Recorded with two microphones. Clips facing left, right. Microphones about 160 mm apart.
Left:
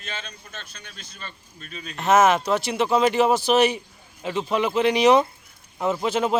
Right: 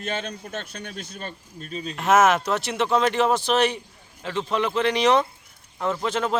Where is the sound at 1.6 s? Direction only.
35° right (ahead or behind).